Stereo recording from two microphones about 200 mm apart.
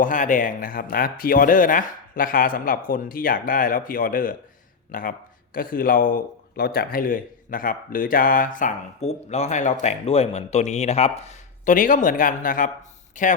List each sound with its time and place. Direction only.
0.0 s a man's voice: 40° left (ahead or behind)